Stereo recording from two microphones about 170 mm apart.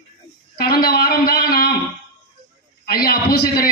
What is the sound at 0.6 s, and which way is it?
A man's voice, 60° left (ahead or behind).